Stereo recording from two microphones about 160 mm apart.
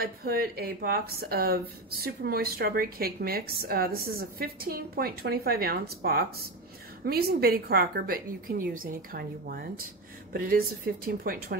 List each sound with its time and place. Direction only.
0.0 s a woman's voice: 70° right (ahead or behind)